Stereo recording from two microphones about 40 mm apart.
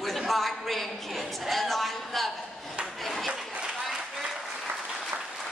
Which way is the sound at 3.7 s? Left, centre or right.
Centre.